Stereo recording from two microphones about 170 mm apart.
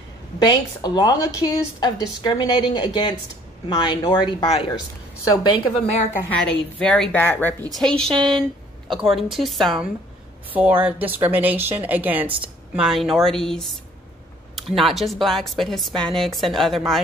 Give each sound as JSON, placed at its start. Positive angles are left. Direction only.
{"t": 0.4, "sound": "a woman's voice", "side_deg": 25}
{"t": 6.2, "sound": "a woman's voice", "side_deg": 5}
{"t": 8.1, "sound": "a woman's voice", "side_deg": -30}
{"t": 8.4, "sound": "a sound", "side_deg": 0}
{"t": 9.1, "sound": "a woman's voice", "side_deg": 0}